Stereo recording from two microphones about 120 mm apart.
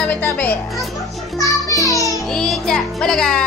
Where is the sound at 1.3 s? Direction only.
25° left (ahead or behind).